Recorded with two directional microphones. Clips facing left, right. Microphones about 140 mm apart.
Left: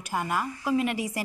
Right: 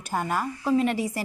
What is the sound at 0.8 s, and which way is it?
Speech, 30° right (ahead or behind).